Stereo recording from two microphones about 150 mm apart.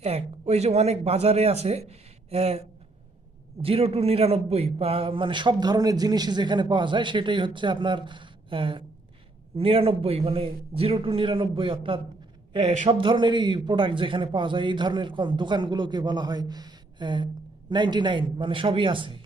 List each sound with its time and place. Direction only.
0.0 s a man's voice: 45° right (ahead or behind)